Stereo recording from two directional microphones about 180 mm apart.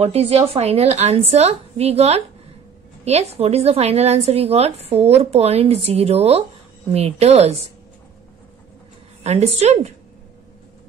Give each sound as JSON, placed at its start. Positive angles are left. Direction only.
{"t": 0.0, "sound": "a woman's voice", "side_deg": -35}
{"t": 9.2, "sound": "a woman's voice", "side_deg": -35}